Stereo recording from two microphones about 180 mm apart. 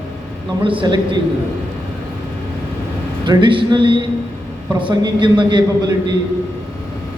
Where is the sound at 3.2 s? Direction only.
25° right (ahead or behind).